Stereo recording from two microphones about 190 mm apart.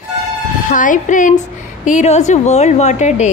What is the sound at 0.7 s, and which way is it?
A woman's voice, 45° left (ahead or behind).